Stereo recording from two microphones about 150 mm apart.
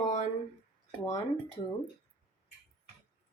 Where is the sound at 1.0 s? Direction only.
25° left (ahead or behind).